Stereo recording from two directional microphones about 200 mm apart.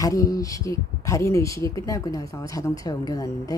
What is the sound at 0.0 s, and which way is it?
Speech, 15° left (ahead or behind).